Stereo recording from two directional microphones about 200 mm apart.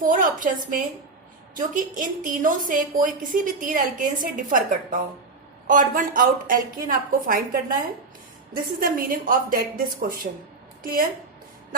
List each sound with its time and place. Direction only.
0.0 s a woman's voice: 40° right (ahead or behind)